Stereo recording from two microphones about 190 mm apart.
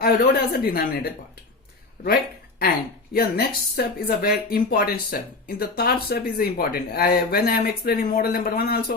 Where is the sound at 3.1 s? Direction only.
55° left (ahead or behind).